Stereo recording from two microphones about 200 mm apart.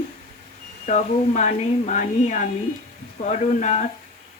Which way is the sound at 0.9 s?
35° left (ahead or behind).